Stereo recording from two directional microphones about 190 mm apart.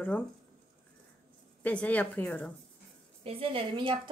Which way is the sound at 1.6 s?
5° left (ahead or behind).